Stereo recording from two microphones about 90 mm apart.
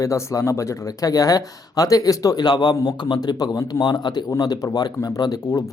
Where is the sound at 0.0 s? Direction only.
35° left (ahead or behind).